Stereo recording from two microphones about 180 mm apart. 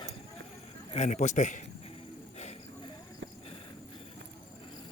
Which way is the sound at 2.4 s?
35° left (ahead or behind).